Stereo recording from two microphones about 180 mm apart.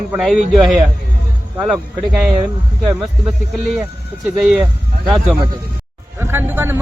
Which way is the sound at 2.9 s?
5° right (ahead or behind).